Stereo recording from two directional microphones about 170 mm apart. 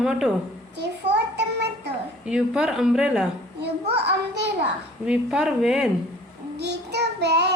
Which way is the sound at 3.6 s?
85° right.